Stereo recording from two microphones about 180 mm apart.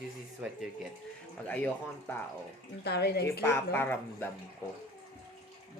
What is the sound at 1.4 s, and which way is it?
Speech, 10° left (ahead or behind).